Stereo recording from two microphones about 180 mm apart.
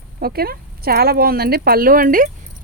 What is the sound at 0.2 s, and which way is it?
Speech, 60° right (ahead or behind).